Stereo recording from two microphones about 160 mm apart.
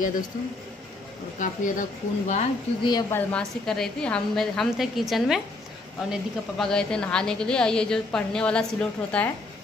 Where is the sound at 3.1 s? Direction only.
5° left (ahead or behind).